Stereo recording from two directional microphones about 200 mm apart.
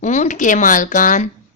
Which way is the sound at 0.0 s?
35° left (ahead or behind).